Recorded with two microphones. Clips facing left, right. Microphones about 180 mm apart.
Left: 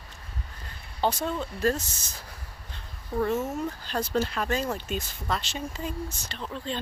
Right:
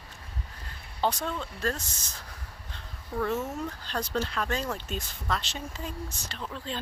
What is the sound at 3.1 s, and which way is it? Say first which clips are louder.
Speech: left 3 dB; 25° left (ahead or behind).